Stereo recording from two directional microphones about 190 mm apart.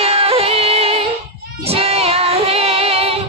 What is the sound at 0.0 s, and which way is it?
Music, 30° right (ahead or behind).